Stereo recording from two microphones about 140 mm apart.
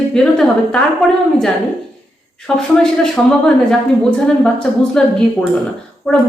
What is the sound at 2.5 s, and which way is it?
A woman's voice, 5° left (ahead or behind).